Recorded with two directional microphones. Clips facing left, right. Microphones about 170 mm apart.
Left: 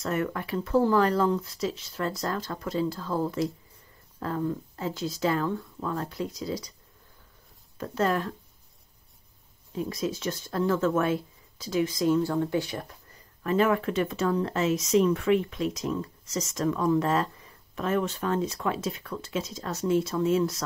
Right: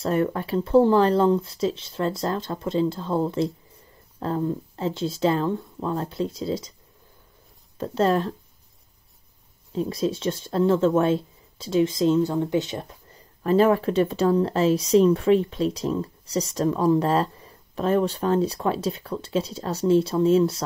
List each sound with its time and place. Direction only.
0.0 s speech: 30° right (ahead or behind)
7.7 s speech: 30° right (ahead or behind)
9.7 s speech: 30° right (ahead or behind)